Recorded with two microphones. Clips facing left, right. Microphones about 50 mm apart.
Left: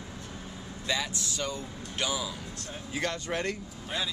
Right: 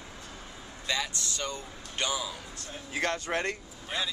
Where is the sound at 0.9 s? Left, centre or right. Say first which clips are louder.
Even; centre.